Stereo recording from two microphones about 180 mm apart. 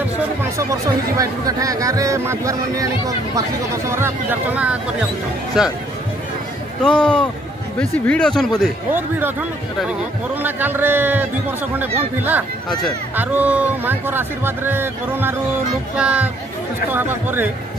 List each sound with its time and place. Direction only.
0.0 s speech: 15° right (ahead or behind)
6.8 s speech: 5° left (ahead or behind)
8.9 s speech: 10° right (ahead or behind)